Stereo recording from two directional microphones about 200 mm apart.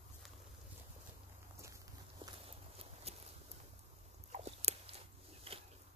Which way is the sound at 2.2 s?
30° right (ahead or behind).